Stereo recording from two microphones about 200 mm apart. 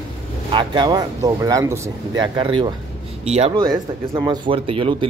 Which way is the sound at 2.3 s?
25° right (ahead or behind).